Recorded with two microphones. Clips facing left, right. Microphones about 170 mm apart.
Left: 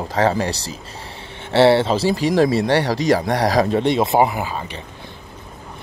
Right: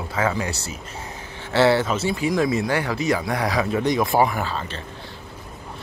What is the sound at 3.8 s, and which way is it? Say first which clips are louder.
Speech: left 3 dB; 25° left (ahead or behind).